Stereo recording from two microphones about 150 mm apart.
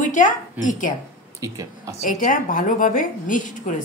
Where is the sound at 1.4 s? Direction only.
20° right (ahead or behind).